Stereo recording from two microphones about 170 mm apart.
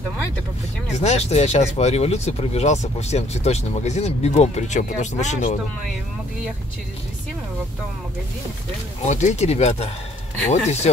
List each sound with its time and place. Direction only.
0.9 s speech: 40° left (ahead or behind)
9.0 s speech: 45° left (ahead or behind)